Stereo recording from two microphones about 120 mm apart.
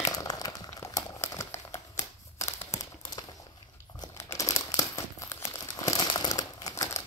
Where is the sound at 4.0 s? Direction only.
25° left (ahead or behind).